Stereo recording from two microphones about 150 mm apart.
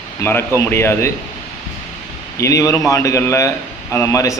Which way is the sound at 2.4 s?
20° left (ahead or behind).